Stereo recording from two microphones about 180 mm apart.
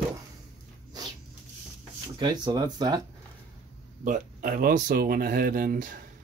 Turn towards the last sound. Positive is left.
turn(degrees=-50)  # may be behind; listen again after turning